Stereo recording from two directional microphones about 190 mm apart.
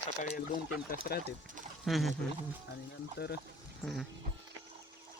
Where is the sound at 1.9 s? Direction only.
Centre (ahead or behind).